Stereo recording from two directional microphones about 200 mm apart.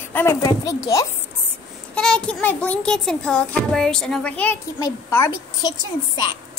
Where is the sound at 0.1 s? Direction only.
10° left (ahead or behind).